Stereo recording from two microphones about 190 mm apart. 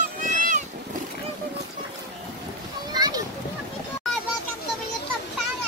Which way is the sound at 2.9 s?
20° right (ahead or behind).